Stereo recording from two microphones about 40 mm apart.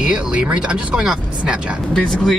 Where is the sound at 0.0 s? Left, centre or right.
Right.